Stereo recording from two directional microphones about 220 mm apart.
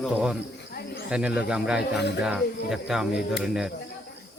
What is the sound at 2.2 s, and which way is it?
Speech, 5° right (ahead or behind).